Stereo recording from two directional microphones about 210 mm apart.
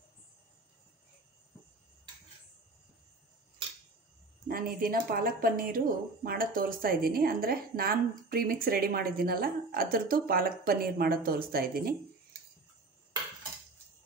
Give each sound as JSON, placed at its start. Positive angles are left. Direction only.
{"t": 4.5, "sound": "a woman's voice", "side_deg": -45}